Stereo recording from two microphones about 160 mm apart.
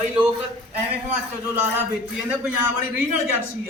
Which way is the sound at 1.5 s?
15° right (ahead or behind).